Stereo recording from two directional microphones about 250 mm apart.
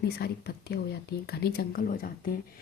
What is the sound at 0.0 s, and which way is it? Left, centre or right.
Speech, left.